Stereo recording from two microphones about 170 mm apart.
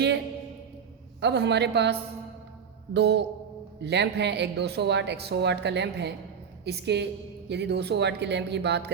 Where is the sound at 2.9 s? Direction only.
85° right.